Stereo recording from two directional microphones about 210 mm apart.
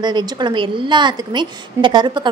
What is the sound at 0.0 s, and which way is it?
A woman's voice, 20° right (ahead or behind).